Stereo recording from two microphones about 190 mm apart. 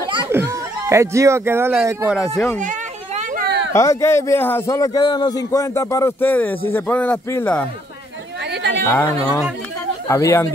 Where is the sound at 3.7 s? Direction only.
15° left (ahead or behind).